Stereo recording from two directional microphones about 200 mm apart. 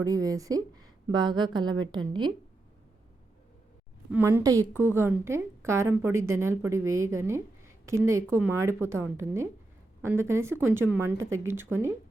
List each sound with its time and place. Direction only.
0.0 s a woman's voice: 15° right (ahead or behind)
4.1 s a woman's voice: 10° right (ahead or behind)